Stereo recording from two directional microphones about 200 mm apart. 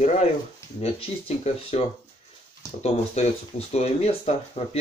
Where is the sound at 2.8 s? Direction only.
30° left (ahead or behind).